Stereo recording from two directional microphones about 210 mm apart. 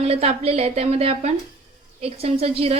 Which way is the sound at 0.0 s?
30° right (ahead or behind).